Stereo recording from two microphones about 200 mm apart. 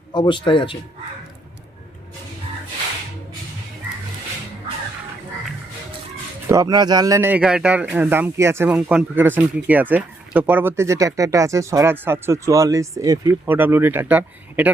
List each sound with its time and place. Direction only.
0.1 s a man's voice: 25° left (ahead or behind)
6.5 s speech: 20° right (ahead or behind)